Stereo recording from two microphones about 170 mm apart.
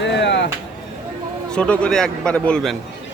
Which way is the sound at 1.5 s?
5° left (ahead or behind).